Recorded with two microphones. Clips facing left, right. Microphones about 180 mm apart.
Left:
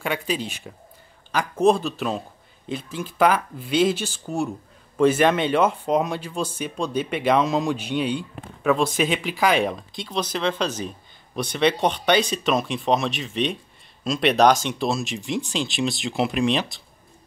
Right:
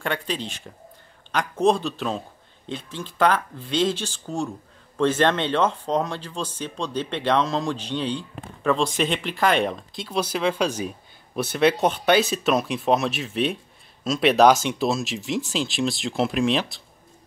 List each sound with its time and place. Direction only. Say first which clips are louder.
0.0 s speech: left 2 dB; 5° left (ahead or behind)